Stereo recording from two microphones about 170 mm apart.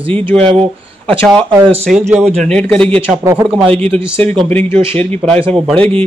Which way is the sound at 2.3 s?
5° left (ahead or behind).